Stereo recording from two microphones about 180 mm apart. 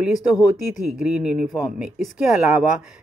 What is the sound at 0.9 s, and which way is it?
Speech, 5° right (ahead or behind).